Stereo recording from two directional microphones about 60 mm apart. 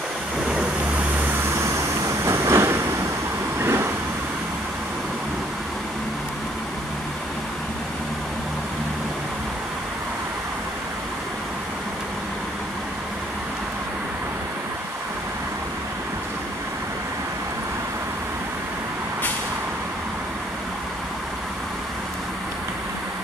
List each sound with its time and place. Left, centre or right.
0.5 s vehicle: right
1.6 s a sound: right
3.5 s vehicle: right